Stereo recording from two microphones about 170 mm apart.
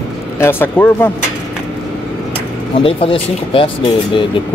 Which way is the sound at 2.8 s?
30° left (ahead or behind).